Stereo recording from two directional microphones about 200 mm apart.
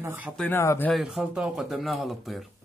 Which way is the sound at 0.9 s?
Centre (ahead or behind).